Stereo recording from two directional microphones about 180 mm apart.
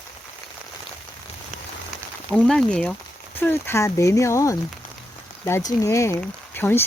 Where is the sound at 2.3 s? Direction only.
5° left (ahead or behind).